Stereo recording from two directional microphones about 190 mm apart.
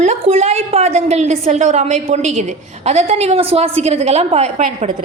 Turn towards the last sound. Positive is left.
turn(degrees=-35)  # may be behind; listen again after turning